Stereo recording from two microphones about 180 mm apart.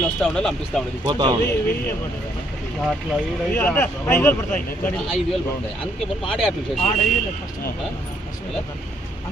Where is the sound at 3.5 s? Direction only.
10° left (ahead or behind).